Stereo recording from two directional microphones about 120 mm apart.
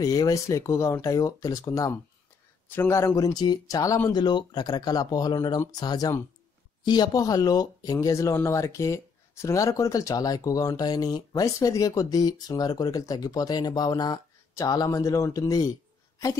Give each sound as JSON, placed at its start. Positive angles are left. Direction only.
{"t": 0.0, "sound": "speech", "side_deg": 30}
{"t": 3.3, "sound": "speech", "side_deg": 35}
{"t": 4.1, "sound": "speech", "side_deg": 40}